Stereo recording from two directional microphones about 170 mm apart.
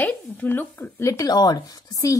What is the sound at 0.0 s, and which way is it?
Speech, 10° left (ahead or behind).